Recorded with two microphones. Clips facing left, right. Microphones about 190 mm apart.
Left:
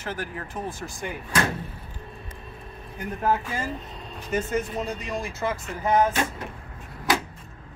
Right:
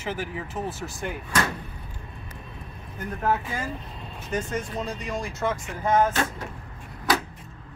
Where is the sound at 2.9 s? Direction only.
10° left (ahead or behind).